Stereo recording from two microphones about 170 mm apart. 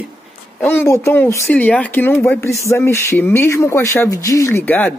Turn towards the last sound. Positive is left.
turn(degrees=10)  # may be behind; listen again after turning